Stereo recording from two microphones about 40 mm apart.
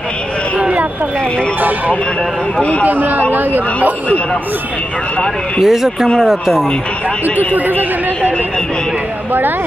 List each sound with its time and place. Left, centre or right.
0.6 s a sound: right
2.8 s a man's voice: right
5.6 s speech: centre
7.3 s a man's voice: right